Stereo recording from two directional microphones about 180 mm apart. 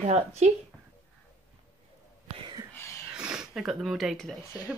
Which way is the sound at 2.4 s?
25° right (ahead or behind).